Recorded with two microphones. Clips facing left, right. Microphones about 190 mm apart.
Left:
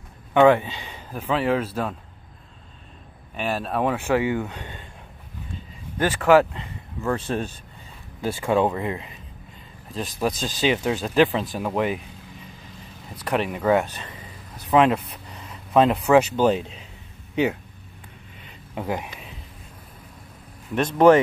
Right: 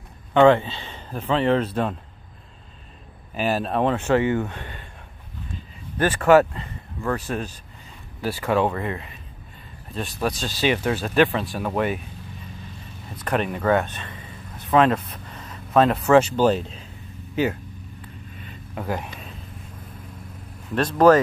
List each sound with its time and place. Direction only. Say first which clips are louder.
0.3 s speech: right 1 dB; 15° left (ahead or behind)
3.3 s speech: right 3 dB; centre (ahead or behind); by 4.8 s 20° left (ahead or behind)
5.9 s speech: right 1 dB; 10° left (ahead or behind)
7.2 s speech: left 2 dB; 30° left (ahead or behind)
10.2 s speech: even; 15° left (ahead or behind)
13.1 s speech: even; 10° left (ahead or behind)
18.8 s speech: even; 15° left (ahead or behind)
20.7 s speech: even; 25° left (ahead or behind)